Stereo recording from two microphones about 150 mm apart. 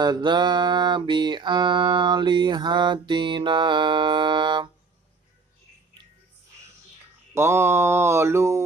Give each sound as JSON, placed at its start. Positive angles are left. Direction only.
{"t": 0.0, "sound": "mantra", "side_deg": -30}
{"t": 7.3, "sound": "mantra", "side_deg": -20}